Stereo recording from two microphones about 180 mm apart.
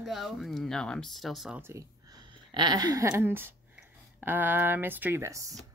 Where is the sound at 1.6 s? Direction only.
20° right (ahead or behind).